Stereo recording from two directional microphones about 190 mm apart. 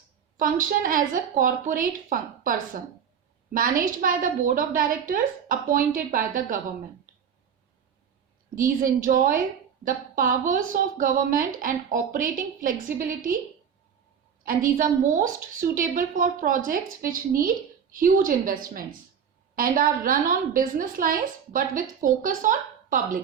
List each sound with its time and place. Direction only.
0.3 s a woman's voice: 45° right (ahead or behind)
8.5 s a woman's voice: 45° right (ahead or behind)
14.4 s a woman's voice: 45° right (ahead or behind)